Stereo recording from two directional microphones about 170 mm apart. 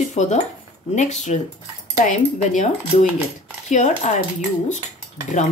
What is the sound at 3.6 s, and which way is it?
Speech, 45° left (ahead or behind).